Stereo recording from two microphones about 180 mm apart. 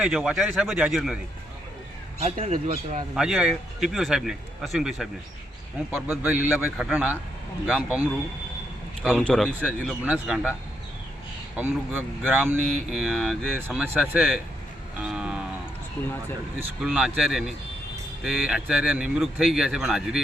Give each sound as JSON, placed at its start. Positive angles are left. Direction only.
{"t": 0.0, "sound": "speech", "side_deg": -5}
{"t": 2.2, "sound": "speech", "side_deg": -35}
{"t": 3.2, "sound": "speech", "side_deg": -5}
{"t": 5.9, "sound": "speech", "side_deg": -10}
{"t": 9.0, "sound": "speech", "side_deg": 5}
{"t": 9.6, "sound": "speech", "side_deg": -10}
{"t": 11.6, "sound": "speech", "side_deg": -5}
{"t": 13.6, "sound": "speech", "side_deg": -10}
{"t": 14.9, "sound": "a sound", "side_deg": -5}
{"t": 16.8, "sound": "speech", "side_deg": -5}